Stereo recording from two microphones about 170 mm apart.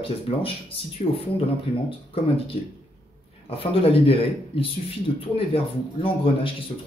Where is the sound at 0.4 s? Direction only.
35° left (ahead or behind).